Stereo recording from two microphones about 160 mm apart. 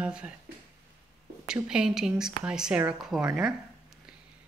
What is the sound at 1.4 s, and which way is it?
Speech, 5° right (ahead or behind).